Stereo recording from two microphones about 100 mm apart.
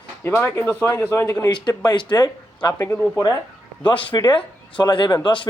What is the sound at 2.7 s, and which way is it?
Speech, 30° left (ahead or behind).